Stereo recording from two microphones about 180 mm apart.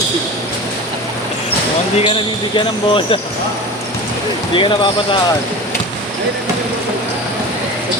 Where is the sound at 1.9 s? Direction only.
30° left (ahead or behind).